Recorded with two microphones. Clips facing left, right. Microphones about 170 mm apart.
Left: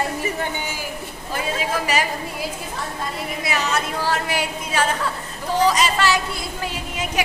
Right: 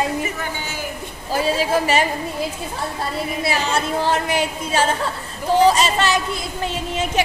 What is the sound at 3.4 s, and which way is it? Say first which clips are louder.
Speech: right 2 dB; 30° right (ahead or behind).